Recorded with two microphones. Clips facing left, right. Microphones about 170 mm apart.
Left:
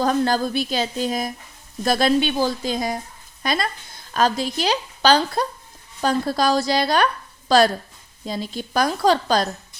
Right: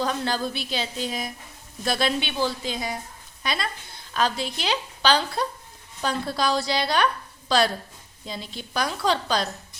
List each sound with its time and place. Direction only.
0.0 s a woman's voice: 45° left (ahead or behind)